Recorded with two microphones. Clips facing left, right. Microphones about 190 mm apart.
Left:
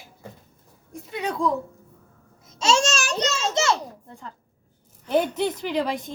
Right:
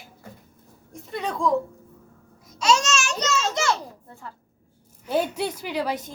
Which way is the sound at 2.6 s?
30° left (ahead or behind).